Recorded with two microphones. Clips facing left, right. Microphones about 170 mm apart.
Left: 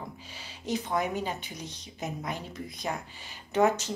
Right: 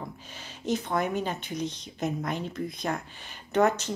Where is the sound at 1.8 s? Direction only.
60° right (ahead or behind).